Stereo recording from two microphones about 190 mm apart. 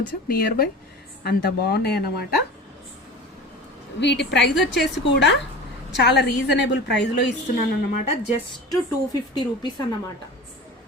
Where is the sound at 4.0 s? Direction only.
65° left (ahead or behind).